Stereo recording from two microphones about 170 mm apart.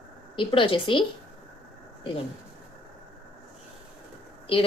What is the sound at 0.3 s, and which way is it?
Speech, 30° left (ahead or behind).